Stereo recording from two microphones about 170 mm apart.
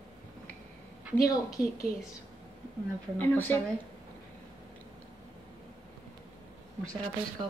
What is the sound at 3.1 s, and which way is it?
Speech, 10° left (ahead or behind).